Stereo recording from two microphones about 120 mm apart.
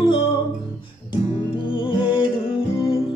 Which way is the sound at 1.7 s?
45° left (ahead or behind).